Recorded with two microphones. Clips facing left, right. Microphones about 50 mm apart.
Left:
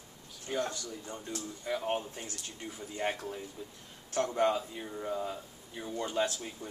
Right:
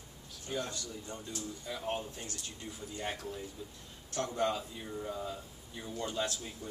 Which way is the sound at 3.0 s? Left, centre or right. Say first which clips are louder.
Left 5 dB; left.